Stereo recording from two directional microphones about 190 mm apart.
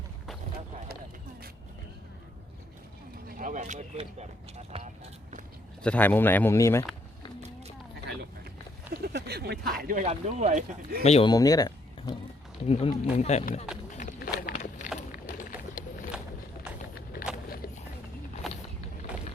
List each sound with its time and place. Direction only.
3.2 s speech: 45° right (ahead or behind)
5.8 s speech: 10° left (ahead or behind)
8.9 s speech: 55° right (ahead or behind); by 10.6 s 35° right (ahead or behind)
11.0 s speech: 35° left (ahead or behind)
11.3 s speech: 20° left (ahead or behind)
12.6 s speech: 30° left (ahead or behind)
13.9 s a sound: 50° left (ahead or behind)
14.9 s vehicle: 40° left (ahead or behind)
16.9 s a sound: 55° left (ahead or behind)
18.4 s vehicle: centre (ahead or behind)